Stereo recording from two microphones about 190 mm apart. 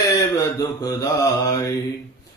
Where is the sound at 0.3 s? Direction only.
20° left (ahead or behind).